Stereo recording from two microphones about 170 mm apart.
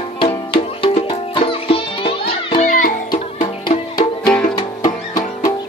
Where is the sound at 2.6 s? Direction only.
50° left (ahead or behind).